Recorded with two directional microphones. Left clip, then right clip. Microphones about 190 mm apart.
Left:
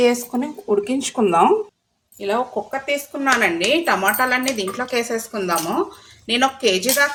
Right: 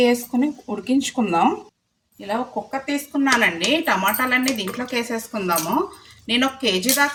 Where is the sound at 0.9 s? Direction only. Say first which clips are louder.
Left 2 dB; 20° left (ahead or behind).